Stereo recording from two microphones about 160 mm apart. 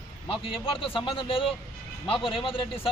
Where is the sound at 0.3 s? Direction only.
35° left (ahead or behind).